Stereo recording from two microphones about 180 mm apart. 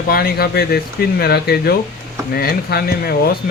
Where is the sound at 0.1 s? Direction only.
60° left (ahead or behind).